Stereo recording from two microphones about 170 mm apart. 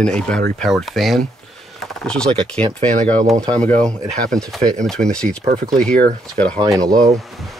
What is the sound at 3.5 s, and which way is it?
Speech, 5° left (ahead or behind).